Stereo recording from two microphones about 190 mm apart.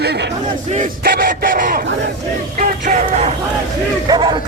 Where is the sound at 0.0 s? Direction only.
60° right (ahead or behind).